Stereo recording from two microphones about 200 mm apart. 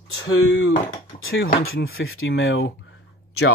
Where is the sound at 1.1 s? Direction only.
35° left (ahead or behind).